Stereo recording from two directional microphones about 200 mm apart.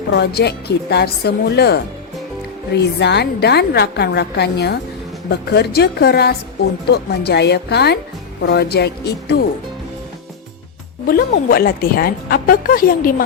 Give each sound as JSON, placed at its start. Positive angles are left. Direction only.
{"t": 0.1, "sound": "a woman's voice", "side_deg": 55}
{"t": 11.0, "sound": "a woman's voice", "side_deg": 45}